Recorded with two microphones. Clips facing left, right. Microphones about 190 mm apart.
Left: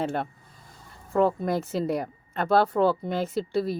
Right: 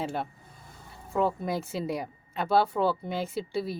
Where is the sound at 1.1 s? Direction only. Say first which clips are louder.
Left 4 dB; 5° right (ahead or behind).